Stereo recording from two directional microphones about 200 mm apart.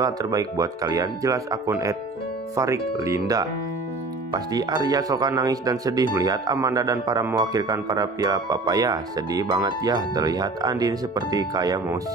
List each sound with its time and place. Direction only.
0.0 s speech: 20° right (ahead or behind)